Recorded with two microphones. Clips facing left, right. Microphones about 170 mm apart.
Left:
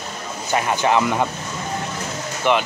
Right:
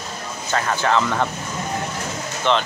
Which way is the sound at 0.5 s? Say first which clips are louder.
Left 2 dB; 15° left (ahead or behind).